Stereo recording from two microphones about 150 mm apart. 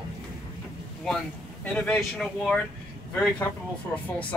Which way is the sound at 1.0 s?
10° left (ahead or behind).